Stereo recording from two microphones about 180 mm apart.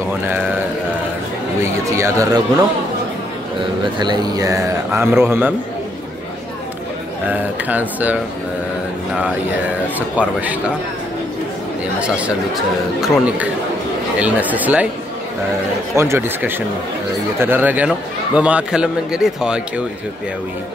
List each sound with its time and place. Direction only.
1.6 s a man's voice: 15° right (ahead or behind)
3.8 s a man's voice: 25° right (ahead or behind)
7.2 s a man's voice: 10° right (ahead or behind)
9.9 s a man's voice: 10° right (ahead or behind)
13.0 s a man's voice: centre (ahead or behind)
16.0 s a man's voice: 15° right (ahead or behind)